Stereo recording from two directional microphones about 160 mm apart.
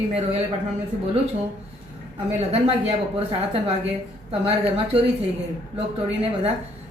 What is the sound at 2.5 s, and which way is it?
A woman's voice, 40° right (ahead or behind).